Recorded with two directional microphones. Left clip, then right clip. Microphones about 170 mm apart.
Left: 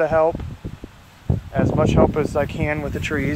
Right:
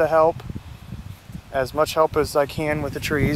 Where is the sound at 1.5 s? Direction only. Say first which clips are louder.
Left 1 dB; 20° right (ahead or behind).